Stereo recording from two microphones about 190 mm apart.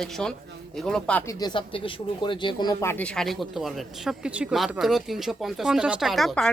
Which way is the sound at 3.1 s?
Centre (ahead or behind).